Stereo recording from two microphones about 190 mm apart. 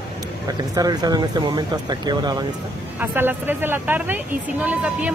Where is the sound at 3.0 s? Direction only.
10° right (ahead or behind).